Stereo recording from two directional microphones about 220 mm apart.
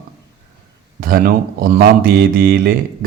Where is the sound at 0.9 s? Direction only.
40° right (ahead or behind).